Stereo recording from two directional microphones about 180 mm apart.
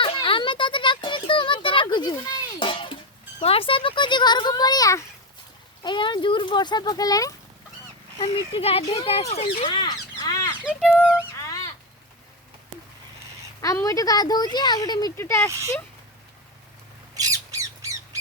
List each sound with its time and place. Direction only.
0.0 s a sound: 30° left (ahead or behind)
2.6 s music: 30° left (ahead or behind)
3.4 s a woman's voice: 30° left (ahead or behind)
8.5 s speech: 35° left (ahead or behind)
9.6 s bird: 25° left (ahead or behind)
10.6 s a sound: 5° right (ahead or behind)
11.3 s a sound: 20° left (ahead or behind)
13.6 s a woman's voice: 20° left (ahead or behind)
17.2 s bird: 20° right (ahead or behind)